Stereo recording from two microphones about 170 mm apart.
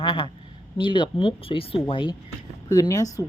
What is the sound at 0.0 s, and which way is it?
A woman's voice, 25° left (ahead or behind).